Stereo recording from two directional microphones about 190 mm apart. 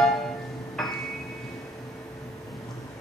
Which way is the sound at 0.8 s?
Centre (ahead or behind).